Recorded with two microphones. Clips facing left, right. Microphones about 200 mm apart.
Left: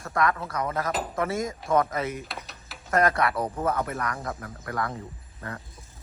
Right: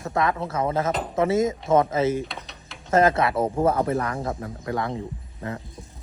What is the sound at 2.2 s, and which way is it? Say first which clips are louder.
Mechanisms: right 4 dB; centre (ahead or behind).